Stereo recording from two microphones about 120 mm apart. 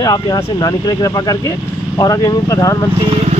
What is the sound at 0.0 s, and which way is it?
A man's voice, 35° left (ahead or behind).